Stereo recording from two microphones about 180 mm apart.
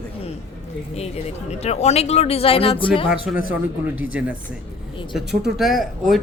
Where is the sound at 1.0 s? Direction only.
35° left (ahead or behind).